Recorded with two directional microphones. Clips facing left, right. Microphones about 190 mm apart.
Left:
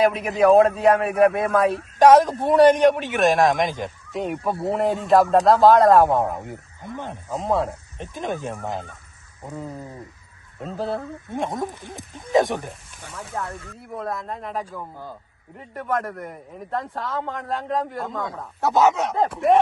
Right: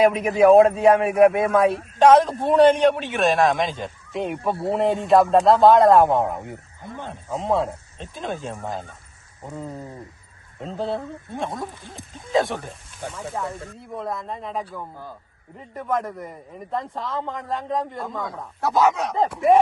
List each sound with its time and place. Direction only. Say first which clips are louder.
0.3 s a man's voice: right 2 dB; 5° right (ahead or behind)
2.0 s a man's voice: left 1 dB; 10° left (ahead or behind)
4.1 s a man's voice: right 1 dB; centre (ahead or behind)
6.8 s a man's voice: left 2 dB; 15° left (ahead or behind)
7.3 s a man's voice: right 1 dB; centre (ahead or behind)
8.1 s a man's voice: left 2 dB; 15° left (ahead or behind)
9.4 s a man's voice: even; centre (ahead or behind)
10.8 s a man's voice: even; centre (ahead or behind)
11.3 s a man's voice: left 4 dB; 20° left (ahead or behind)
13.1 s a man's voice: even; 5° right (ahead or behind)
18.6 s speech: left 1 dB; 25° left (ahead or behind)
19.1 s a man's voice: right 1 dB; centre (ahead or behind)